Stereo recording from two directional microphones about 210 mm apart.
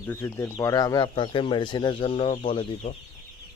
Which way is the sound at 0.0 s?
10° left (ahead or behind).